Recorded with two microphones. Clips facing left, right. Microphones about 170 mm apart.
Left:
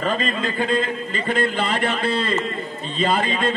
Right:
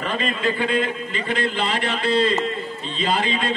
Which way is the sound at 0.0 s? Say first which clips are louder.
Left 1 dB; 40° left (ahead or behind).